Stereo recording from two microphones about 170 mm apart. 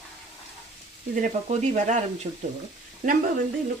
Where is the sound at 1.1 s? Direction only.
45° right (ahead or behind).